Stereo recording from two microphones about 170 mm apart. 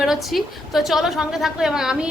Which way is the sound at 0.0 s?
Centre (ahead or behind).